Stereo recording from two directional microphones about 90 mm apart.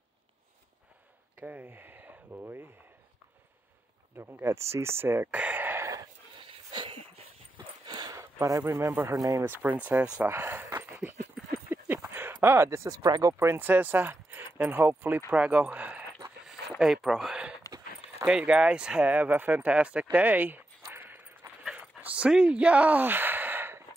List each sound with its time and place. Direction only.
1.4 s speech: 20° right (ahead or behind)
4.2 s speech: 25° right (ahead or behind)
6.4 s wheeze: 70° right (ahead or behind)
7.5 s dog: 55° right (ahead or behind)
8.2 s speech: 40° right (ahead or behind)
9.4 s speech: 20° right (ahead or behind)
10.2 s speech: 25° right (ahead or behind)
16.4 s a sound: 5° right (ahead or behind)
18.2 s speech: 15° right (ahead or behind)
20.9 s a sound: 20° right (ahead or behind)
21.7 s dog: 15° right (ahead or behind)